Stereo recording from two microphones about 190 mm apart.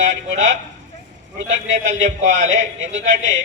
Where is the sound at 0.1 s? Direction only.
80° right.